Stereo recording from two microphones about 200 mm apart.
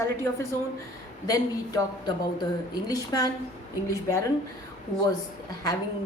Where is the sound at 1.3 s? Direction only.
20° left (ahead or behind).